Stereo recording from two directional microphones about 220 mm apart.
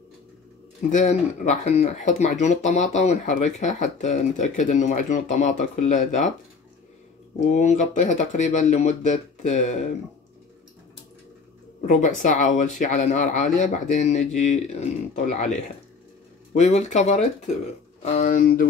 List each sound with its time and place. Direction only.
0.9 s speech: 30° left (ahead or behind)
7.4 s speech: 30° left (ahead or behind)
11.8 s speech: 35° left (ahead or behind)